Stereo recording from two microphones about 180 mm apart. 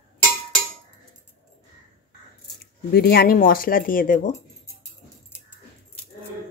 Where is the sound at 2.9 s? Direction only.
60° left (ahead or behind).